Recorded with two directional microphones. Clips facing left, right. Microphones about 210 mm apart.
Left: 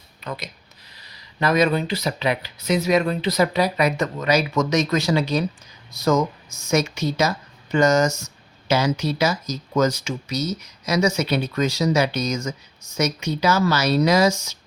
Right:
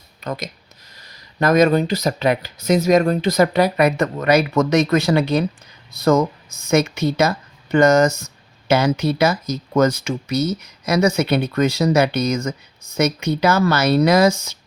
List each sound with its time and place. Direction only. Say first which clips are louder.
0.3 s speech: right 5 dB; 45° right (ahead or behind)